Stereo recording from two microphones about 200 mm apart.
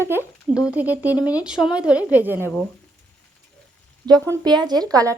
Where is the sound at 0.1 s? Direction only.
10° right (ahead or behind).